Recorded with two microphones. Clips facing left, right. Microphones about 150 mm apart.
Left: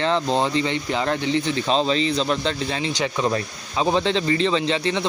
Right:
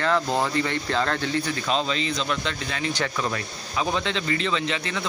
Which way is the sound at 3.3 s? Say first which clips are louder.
Left 6 dB; 30° left (ahead or behind).